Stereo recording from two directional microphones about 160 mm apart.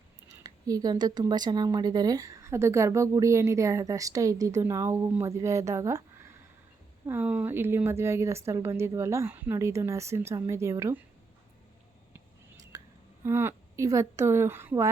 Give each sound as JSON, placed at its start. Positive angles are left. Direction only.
{"t": 0.3, "sound": "a woman's voice", "side_deg": -25}
{"t": 12.7, "sound": "a sound", "side_deg": -20}
{"t": 13.2, "sound": "a woman's voice", "side_deg": -15}